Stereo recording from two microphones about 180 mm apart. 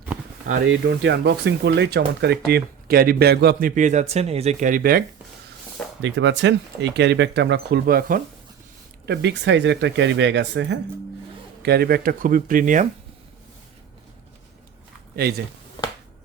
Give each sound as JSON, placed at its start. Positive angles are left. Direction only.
{"t": 0.7, "sound": "speech", "side_deg": -75}
{"t": 6.0, "sound": "speech", "side_deg": -85}
{"t": 9.0, "sound": "speech", "side_deg": -75}
{"t": 11.6, "sound": "speech", "side_deg": -60}
{"t": 15.1, "sound": "speech", "side_deg": -60}